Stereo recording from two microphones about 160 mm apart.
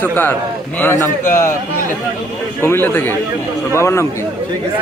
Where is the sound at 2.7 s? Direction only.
15° left (ahead or behind).